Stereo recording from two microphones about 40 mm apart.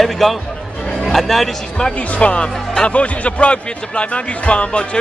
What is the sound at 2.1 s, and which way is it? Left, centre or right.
Speech, left.